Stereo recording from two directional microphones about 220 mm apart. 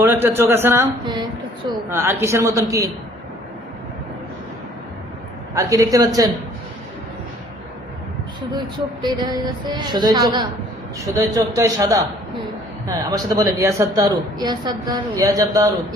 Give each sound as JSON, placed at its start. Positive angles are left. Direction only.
{"t": 0.0, "sound": "a woman's voice", "side_deg": -10}
{"t": 5.5, "sound": "a woman's voice", "side_deg": -15}
{"t": 8.5, "sound": "a woman's voice", "side_deg": -20}
{"t": 13.1, "sound": "a woman's voice", "side_deg": -15}